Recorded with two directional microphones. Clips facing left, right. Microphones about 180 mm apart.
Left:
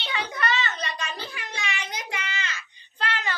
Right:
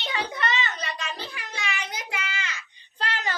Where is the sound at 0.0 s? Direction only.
35° right (ahead or behind); by 2.6 s 10° right (ahead or behind).